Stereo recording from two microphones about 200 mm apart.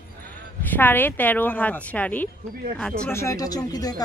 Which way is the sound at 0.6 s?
10° left (ahead or behind).